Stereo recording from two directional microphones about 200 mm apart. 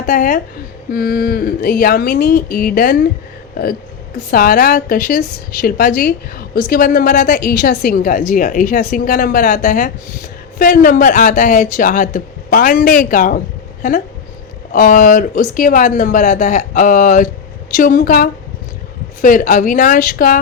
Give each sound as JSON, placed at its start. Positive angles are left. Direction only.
{"t": 0.0, "sound": "speech", "side_deg": 45}
{"t": 4.3, "sound": "speech", "side_deg": 45}
{"t": 14.7, "sound": "speech", "side_deg": 45}